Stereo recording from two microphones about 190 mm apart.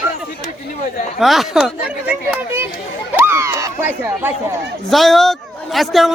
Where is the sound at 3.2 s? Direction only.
15° right (ahead or behind).